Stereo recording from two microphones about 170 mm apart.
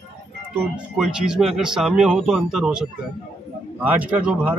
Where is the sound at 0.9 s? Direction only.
Centre (ahead or behind).